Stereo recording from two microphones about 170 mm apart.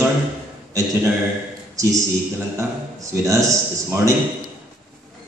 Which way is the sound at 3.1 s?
20° right (ahead or behind).